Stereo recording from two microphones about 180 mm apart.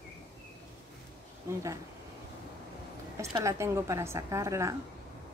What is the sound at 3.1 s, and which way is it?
Speech, 15° right (ahead or behind).